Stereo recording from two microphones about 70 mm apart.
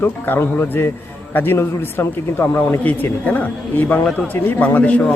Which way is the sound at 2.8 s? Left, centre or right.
Left.